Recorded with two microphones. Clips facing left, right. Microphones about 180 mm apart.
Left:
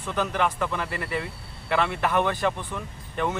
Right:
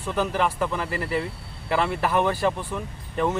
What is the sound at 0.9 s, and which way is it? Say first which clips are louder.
Speech: right 4 dB; 40° right (ahead or behind).